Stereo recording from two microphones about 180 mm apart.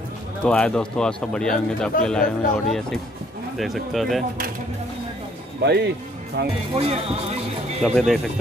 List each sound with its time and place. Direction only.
0.4 s speech: 5° left (ahead or behind)
5.6 s speech: 65° right (ahead or behind)
6.7 s speech: 35° right (ahead or behind)
7.8 s speech: centre (ahead or behind)